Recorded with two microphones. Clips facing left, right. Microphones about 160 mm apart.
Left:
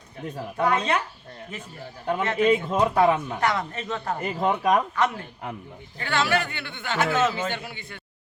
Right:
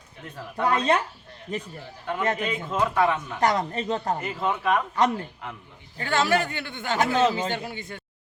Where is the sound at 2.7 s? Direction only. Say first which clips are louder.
Left 3 dB; 35° left (ahead or behind).